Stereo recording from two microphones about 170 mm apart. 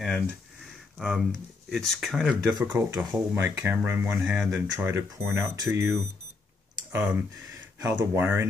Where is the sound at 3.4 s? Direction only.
10° right (ahead or behind).